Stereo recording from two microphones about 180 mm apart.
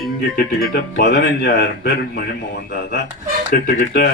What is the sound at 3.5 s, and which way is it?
Speech, 60° left (ahead or behind).